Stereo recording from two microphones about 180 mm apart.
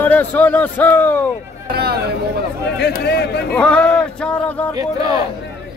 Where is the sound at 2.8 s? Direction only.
65° left (ahead or behind).